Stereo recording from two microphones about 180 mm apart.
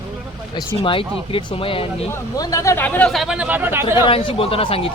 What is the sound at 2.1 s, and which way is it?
Speech, 15° left (ahead or behind).